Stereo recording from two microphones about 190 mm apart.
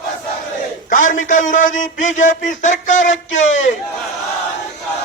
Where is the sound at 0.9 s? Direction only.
45° left (ahead or behind).